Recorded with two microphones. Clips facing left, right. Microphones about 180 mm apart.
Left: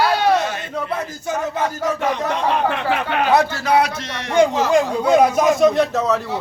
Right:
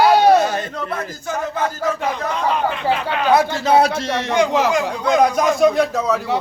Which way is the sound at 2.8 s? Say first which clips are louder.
Even; 65° left (ahead or behind).